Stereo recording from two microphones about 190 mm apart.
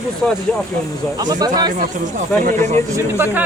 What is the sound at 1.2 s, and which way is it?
Speech, 20° right (ahead or behind).